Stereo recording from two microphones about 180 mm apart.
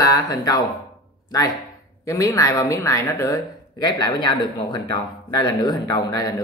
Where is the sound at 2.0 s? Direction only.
20° left (ahead or behind).